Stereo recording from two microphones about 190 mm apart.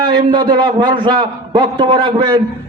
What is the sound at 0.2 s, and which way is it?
A man's voice, 20° right (ahead or behind).